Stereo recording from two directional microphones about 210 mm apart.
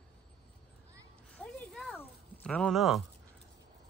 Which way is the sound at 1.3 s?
5° left (ahead or behind).